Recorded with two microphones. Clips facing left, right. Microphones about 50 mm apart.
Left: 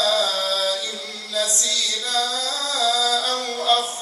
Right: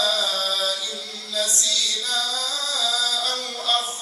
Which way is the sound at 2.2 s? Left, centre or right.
Left.